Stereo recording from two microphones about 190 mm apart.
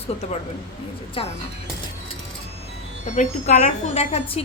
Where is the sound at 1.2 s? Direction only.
30° left (ahead or behind).